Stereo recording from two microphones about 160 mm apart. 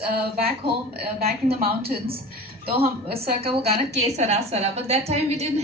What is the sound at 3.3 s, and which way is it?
A woman's voice, 40° right (ahead or behind).